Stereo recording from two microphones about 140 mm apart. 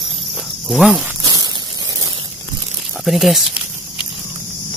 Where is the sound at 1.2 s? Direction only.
25° right (ahead or behind).